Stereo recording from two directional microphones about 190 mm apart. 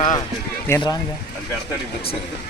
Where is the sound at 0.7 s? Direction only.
15° left (ahead or behind).